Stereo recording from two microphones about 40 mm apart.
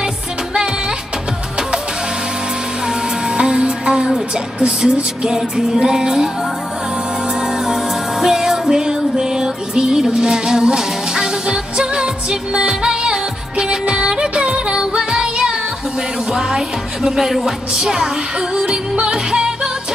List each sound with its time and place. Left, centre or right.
2.9 s music: centre
7.3 s music: centre
17.3 s music: centre